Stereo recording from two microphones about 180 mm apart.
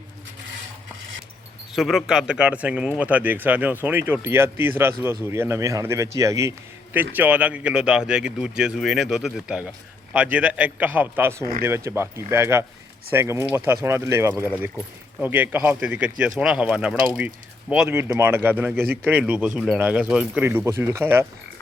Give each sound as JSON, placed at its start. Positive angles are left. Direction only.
{"t": 1.7, "sound": "a man's voice", "side_deg": 0}